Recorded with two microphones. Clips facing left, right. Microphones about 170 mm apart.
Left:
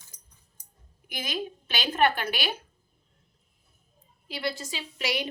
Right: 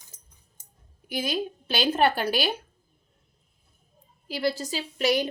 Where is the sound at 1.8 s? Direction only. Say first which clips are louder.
Right 2 dB; 35° right (ahead or behind).